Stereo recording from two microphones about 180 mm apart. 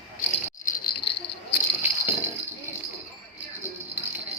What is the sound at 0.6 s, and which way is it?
Rattle, 55° left (ahead or behind).